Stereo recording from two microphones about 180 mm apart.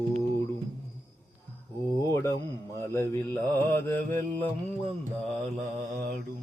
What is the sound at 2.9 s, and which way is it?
Music, 15° left (ahead or behind).